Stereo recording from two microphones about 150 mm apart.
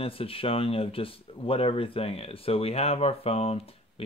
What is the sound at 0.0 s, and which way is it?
Speech, 40° left (ahead or behind).